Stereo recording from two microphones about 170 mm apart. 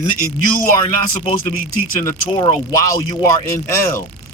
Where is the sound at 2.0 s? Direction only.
25° left (ahead or behind).